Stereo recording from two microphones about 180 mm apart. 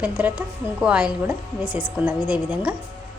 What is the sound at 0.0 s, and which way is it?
A woman's voice, 10° right (ahead or behind).